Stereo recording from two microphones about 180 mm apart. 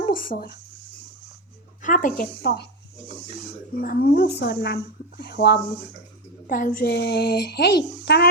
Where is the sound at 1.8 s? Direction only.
45° left (ahead or behind); by 3.1 s 65° left (ahead or behind).